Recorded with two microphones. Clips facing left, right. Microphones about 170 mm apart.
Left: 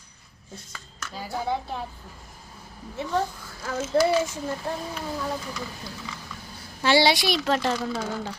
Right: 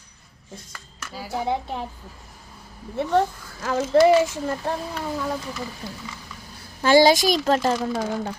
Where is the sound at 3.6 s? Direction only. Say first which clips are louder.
Right 6 dB; 90° right.